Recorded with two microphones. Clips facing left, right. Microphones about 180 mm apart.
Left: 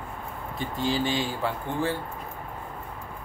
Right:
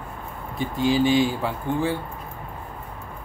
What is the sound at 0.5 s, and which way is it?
Speech, 15° right (ahead or behind).